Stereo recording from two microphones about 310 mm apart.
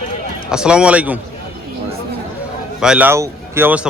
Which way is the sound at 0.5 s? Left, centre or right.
Centre.